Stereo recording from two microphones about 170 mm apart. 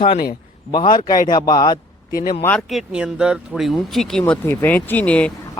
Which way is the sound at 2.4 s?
5° left (ahead or behind).